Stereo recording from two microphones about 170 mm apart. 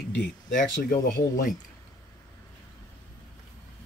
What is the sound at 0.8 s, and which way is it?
Speech, 50° left (ahead or behind).